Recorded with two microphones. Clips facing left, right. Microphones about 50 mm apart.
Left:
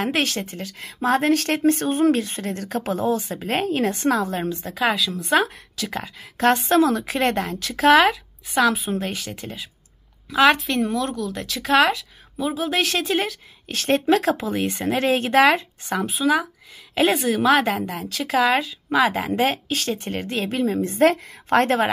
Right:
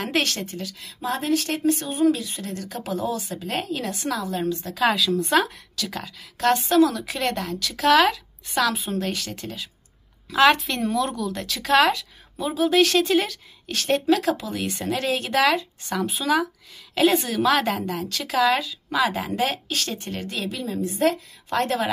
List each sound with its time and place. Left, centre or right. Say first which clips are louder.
0.2 s a woman's voice: left 2 dB; centre
0.6 s speech: left 1 dB; left
1.0 s speech: left 5 dB; left
4.9 s speech: right 3 dB; centre
5.3 s a woman's voice: left 1 dB; centre
8.7 s a woman's voice: left 1 dB; centre
10.3 s speech: left 1 dB; centre
13.7 s speech: left 2 dB; left
16.1 s a woman's voice: left 2 dB; centre
16.9 s a woman's voice: left 1 dB; centre
18.4 s speech: even; left